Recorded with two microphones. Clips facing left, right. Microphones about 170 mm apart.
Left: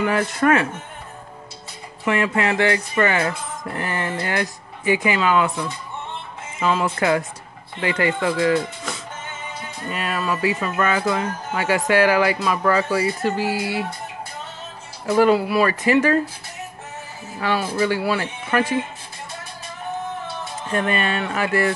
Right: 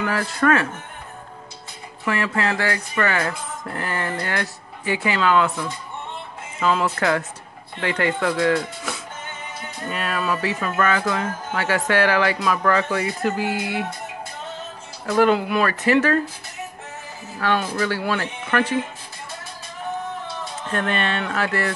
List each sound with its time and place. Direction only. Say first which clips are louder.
0.0 s speech: left 2 dB; 20° left (ahead or behind)
2.0 s speech: left 3 dB; 20° left (ahead or behind)
15.0 s speech: left 2 dB; 10° left (ahead or behind)
17.4 s speech: left 1 dB; 10° left (ahead or behind)
20.7 s speech: left 2 dB; 10° left (ahead or behind)